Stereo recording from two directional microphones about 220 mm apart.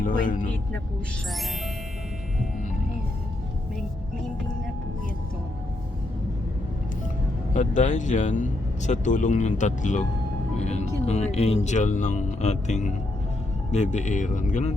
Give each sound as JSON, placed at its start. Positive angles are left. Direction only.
{"t": 0.0, "sound": "speech", "side_deg": 40}
{"t": 7.5, "sound": "speech", "side_deg": 35}
{"t": 10.6, "sound": "music", "side_deg": 30}
{"t": 11.0, "sound": "speech", "side_deg": 30}